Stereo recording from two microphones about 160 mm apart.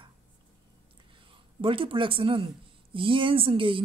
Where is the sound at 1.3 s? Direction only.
35° right (ahead or behind).